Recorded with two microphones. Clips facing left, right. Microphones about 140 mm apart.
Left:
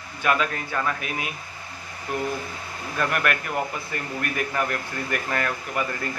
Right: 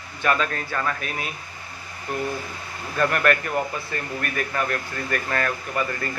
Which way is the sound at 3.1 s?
5° left (ahead or behind).